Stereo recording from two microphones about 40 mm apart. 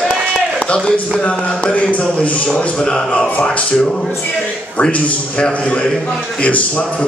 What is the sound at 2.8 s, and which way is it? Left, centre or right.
A man's voice, centre.